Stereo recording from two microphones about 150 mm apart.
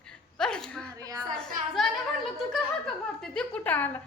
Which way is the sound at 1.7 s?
5° left (ahead or behind).